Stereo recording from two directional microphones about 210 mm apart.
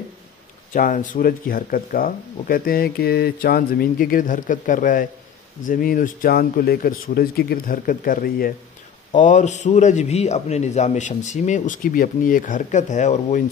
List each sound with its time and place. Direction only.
0.7 s a man's voice: 40° left (ahead or behind)